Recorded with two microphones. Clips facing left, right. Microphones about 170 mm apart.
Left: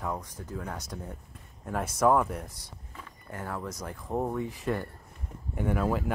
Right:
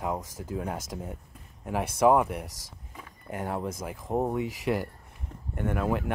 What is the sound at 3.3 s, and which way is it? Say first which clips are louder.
Speech: right 5 dB; 20° right (ahead or behind).